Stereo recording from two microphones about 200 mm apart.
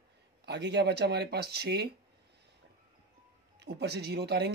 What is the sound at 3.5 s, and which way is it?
Speech, 55° right (ahead or behind).